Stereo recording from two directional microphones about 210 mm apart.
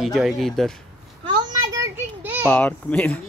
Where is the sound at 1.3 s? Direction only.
15° right (ahead or behind).